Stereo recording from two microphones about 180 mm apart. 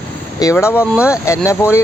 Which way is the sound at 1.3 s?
15° left (ahead or behind).